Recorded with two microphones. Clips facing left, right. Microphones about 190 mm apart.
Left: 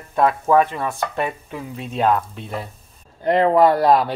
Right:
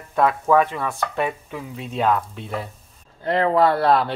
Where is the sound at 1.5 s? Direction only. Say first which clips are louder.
Left 1 dB; 5° right (ahead or behind).